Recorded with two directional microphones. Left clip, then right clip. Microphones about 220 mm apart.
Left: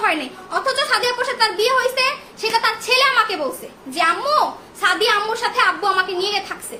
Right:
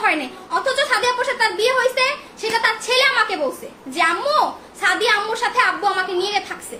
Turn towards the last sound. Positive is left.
turn(degrees=5)  # may be behind; listen again after turning